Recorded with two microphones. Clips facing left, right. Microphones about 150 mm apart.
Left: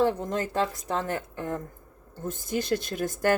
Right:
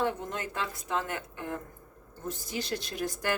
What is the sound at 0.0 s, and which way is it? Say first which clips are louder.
Speech: left 6 dB; 35° left (ahead or behind).